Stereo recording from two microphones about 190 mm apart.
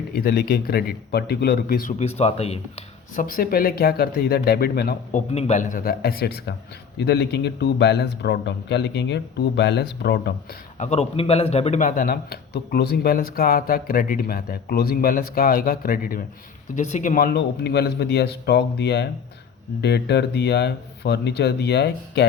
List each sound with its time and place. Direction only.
0.1 s speech: 55° left (ahead or behind)
2.0 s speech: 35° left (ahead or behind)
3.2 s speech: 50° left (ahead or behind)
5.1 s speech: 35° left (ahead or behind); by 10.3 s 60° left (ahead or behind)
10.8 s speech: 35° left (ahead or behind)
16.7 s speech: 40° left (ahead or behind); by 22.3 s 60° left (ahead or behind)